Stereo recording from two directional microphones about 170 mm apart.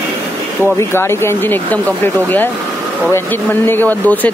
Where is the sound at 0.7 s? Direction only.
15° left (ahead or behind).